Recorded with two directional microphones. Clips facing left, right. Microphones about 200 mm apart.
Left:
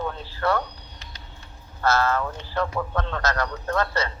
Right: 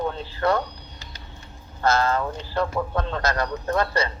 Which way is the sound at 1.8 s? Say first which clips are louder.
Right 1 dB; 15° right (ahead or behind).